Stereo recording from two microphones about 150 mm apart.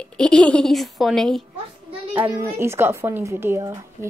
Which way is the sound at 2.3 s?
15° right (ahead or behind).